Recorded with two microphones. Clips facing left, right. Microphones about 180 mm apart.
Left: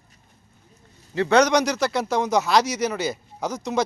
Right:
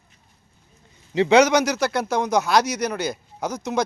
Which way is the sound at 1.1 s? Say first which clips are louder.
Right 2 dB; 15° right (ahead or behind).